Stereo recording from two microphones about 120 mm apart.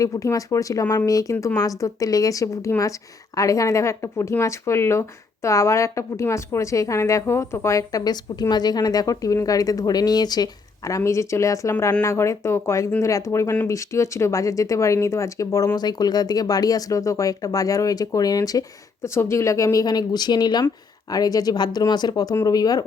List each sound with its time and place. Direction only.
0.0 s speech: 30° left (ahead or behind)